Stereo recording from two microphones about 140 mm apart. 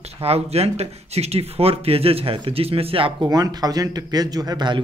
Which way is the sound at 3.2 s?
25° right (ahead or behind).